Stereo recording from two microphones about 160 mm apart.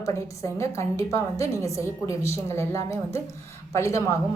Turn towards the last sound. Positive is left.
turn(degrees=20)  # may be behind; listen again after turning